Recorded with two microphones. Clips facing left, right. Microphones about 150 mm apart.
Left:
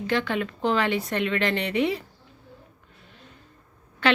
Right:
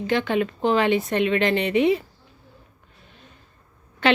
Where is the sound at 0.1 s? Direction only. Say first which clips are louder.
Right 4 dB; 20° right (ahead or behind).